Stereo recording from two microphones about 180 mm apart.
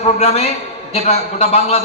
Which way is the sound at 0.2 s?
35° left (ahead or behind).